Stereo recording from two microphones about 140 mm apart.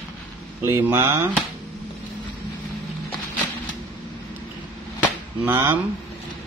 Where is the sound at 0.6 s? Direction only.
15° right (ahead or behind).